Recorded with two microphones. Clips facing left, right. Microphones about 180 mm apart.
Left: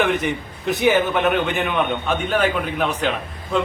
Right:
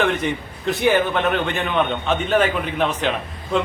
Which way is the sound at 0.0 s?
15° left (ahead or behind).